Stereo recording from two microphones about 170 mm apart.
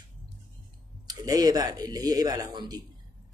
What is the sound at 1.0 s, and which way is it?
A man's voice, 20° right (ahead or behind).